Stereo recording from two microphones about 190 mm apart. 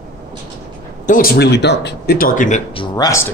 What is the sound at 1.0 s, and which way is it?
Speech, 50° left (ahead or behind).